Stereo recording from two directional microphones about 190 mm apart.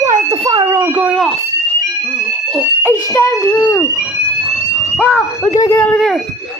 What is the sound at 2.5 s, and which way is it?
Fire alarm, 10° left (ahead or behind).